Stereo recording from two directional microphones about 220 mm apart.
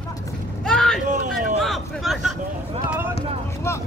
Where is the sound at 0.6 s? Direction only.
5° left (ahead or behind).